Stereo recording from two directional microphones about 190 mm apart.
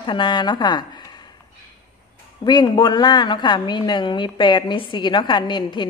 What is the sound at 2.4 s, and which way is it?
A woman's voice, 25° left (ahead or behind).